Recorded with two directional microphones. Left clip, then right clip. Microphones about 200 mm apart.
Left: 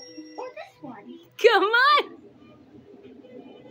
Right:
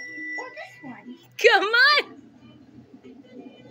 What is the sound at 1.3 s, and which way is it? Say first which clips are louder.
Speech: right 1 dB; 20° left (ahead or behind).